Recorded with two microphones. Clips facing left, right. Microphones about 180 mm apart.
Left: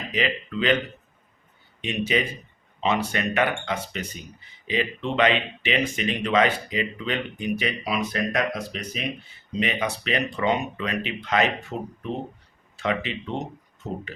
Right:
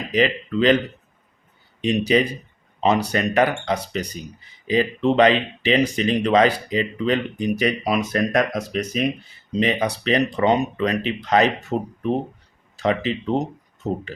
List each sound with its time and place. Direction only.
0.1 s speech: 35° right (ahead or behind)
1.8 s speech: 35° right (ahead or behind)
12.7 s speech: 35° right (ahead or behind)